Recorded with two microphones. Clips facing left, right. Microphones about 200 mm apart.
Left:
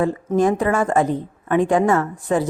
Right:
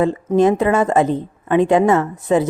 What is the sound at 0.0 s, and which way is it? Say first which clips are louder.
A woman's voice: right 3 dB; 20° right (ahead or behind).